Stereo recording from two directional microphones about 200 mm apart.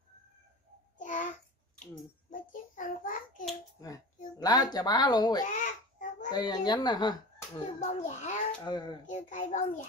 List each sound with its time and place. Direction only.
0.9 s child singing: 40° left (ahead or behind)
2.3 s child singing: 40° left (ahead or behind)
4.4 s speech: 20° left (ahead or behind)
5.5 s babbling: 40° left (ahead or behind)
6.3 s a child's voice: 20° left (ahead or behind)
7.8 s a sound: 35° left (ahead or behind)
8.6 s speech: 20° left (ahead or behind)
9.0 s a child's voice: 40° left (ahead or behind)